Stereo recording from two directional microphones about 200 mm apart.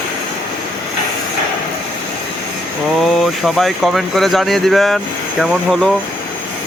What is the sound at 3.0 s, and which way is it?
Speech, centre (ahead or behind).